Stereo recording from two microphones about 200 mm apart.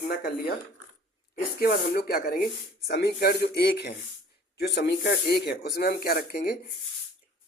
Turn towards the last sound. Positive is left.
turn(degrees=50)  # may be behind; listen again after turning